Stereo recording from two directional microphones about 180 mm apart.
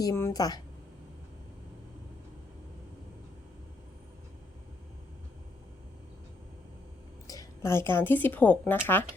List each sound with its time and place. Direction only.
0.0 s a woman's voice: 15° left (ahead or behind)
7.3 s a woman's voice: 15° left (ahead or behind)